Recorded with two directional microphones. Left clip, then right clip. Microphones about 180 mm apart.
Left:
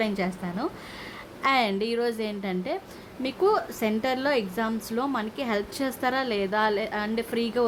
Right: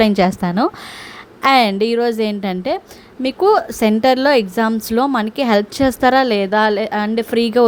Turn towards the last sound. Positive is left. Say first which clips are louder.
# right 12 dB
turn(degrees=-45)  # may be behind; listen again after turning